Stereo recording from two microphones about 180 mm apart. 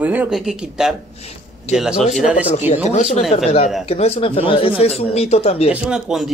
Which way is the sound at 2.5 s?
35° left (ahead or behind).